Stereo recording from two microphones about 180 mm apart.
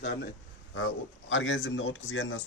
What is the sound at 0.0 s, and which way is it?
Speech, 55° left (ahead or behind).